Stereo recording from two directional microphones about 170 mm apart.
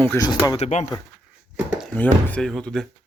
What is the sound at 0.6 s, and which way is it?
Speech, 45° left (ahead or behind).